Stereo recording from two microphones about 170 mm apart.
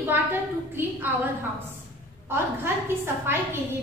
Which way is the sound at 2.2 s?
15° right (ahead or behind).